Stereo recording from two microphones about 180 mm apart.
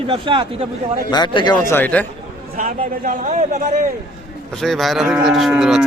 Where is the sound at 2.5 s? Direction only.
50° right (ahead or behind).